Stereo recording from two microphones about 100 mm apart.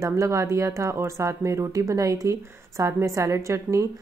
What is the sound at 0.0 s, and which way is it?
A woman's voice, 35° right (ahead or behind).